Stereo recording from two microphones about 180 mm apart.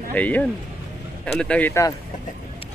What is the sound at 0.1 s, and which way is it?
Speech, 10° left (ahead or behind).